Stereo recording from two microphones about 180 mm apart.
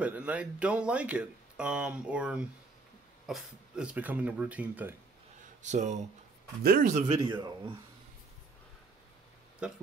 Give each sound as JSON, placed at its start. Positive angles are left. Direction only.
{"t": 0.0, "sound": "speech", "side_deg": -10}
{"t": 5.6, "sound": "speech", "side_deg": -40}
{"t": 6.6, "sound": "speech", "side_deg": -55}
{"t": 6.9, "sound": "speech", "side_deg": -40}
{"t": 7.2, "sound": "a man's voice", "side_deg": -25}
{"t": 9.6, "sound": "speech", "side_deg": -5}